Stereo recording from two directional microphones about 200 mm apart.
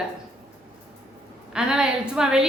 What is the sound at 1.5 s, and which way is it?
Speech, 5° right (ahead or behind).